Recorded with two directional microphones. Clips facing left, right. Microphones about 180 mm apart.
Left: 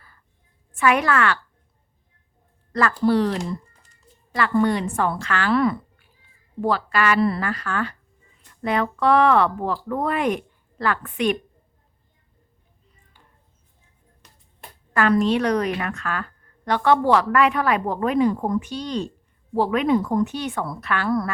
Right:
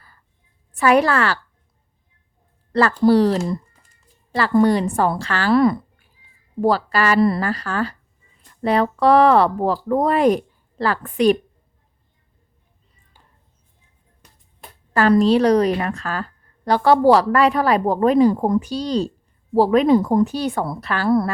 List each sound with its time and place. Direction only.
0.8 s a woman's voice: 35° right (ahead or behind)
3.0 s a woman's voice: 35° right (ahead or behind)
14.9 s a woman's voice: 35° right (ahead or behind)